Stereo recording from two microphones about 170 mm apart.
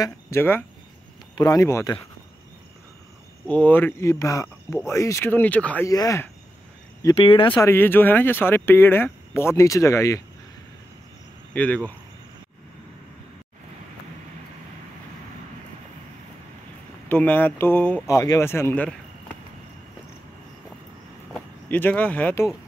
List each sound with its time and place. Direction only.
0.0 s speech: 15° left (ahead or behind)
3.4 s speech: 10° left (ahead or behind)
5.9 s speech: 20° left (ahead or behind)
7.2 s speech: 30° left (ahead or behind)
7.6 s speech: 15° left (ahead or behind)
11.5 s speech: 10° left (ahead or behind)
17.1 s speech: 10° left (ahead or behind)
21.3 s speech: 10° left (ahead or behind)